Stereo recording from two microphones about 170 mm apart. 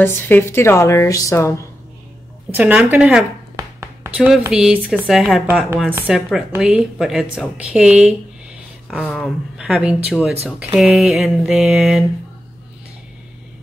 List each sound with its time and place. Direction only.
0.0 s a woman's voice: 15° left (ahead or behind)
2.5 s a woman's voice: 10° right (ahead or behind)
6.6 s a sound: 5° right (ahead or behind)